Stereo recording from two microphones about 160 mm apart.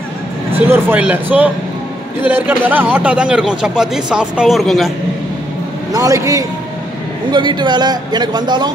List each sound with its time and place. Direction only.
0.7 s speech: 10° right (ahead or behind)
5.9 s a man's voice: 20° right (ahead or behind)